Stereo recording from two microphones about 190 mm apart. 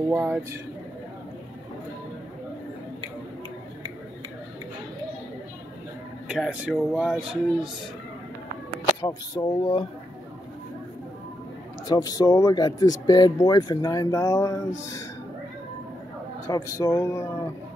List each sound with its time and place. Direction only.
0.1 s speech: 10° right (ahead or behind)
6.2 s speech: 5° right (ahead or behind)
9.0 s speech: 20° left (ahead or behind)
11.9 s speech: 20° left (ahead or behind)
16.4 s speech: 15° left (ahead or behind)